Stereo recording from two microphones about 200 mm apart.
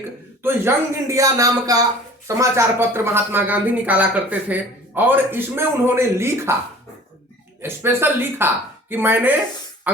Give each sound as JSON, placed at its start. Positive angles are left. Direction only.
{"t": 0.4, "sound": "speech", "side_deg": -15}
{"t": 7.6, "sound": "speech", "side_deg": -10}